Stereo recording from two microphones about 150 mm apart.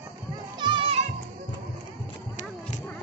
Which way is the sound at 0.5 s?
30° right (ahead or behind).